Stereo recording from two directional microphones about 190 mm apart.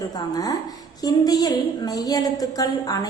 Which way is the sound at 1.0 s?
20° left (ahead or behind).